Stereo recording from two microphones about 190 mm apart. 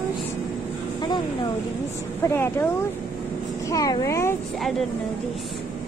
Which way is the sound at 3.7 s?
20° left (ahead or behind).